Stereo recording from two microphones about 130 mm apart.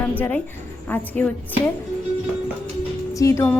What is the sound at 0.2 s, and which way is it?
A woman's voice, 10° left (ahead or behind).